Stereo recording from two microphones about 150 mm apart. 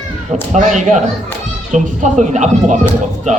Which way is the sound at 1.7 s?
55° right (ahead or behind).